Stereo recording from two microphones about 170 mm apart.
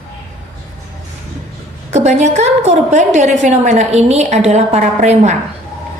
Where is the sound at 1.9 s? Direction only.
45° right (ahead or behind).